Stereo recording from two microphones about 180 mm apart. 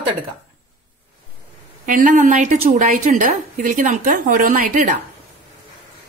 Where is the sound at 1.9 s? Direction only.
45° right (ahead or behind).